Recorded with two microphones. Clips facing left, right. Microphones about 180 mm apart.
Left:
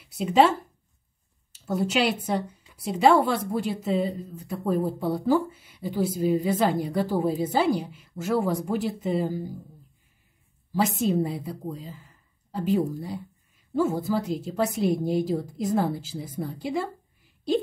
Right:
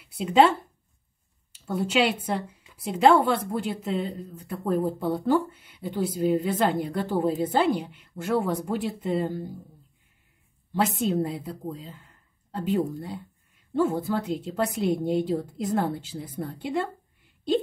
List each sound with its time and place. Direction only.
0.0 s speech: centre (ahead or behind)
11.0 s speech: centre (ahead or behind)